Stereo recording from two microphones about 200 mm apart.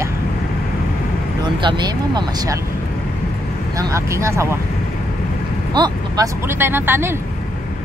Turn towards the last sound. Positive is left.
turn(degrees=-10)  # may be behind; listen again after turning